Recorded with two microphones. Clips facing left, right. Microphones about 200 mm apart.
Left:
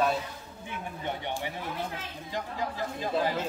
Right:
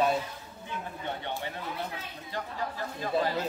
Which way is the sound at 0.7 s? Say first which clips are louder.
Left 1 dB; 15° left (ahead or behind).